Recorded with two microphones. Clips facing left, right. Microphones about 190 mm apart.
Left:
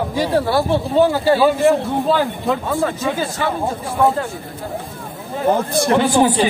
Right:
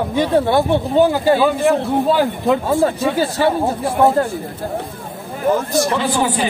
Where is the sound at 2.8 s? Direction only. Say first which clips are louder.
Right 4 dB; 35° right (ahead or behind).